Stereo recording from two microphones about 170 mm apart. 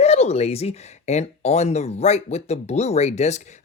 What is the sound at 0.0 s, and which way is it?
Speech, 40° left (ahead or behind).